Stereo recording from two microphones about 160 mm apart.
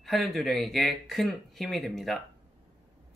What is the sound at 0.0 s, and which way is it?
Speech, centre (ahead or behind).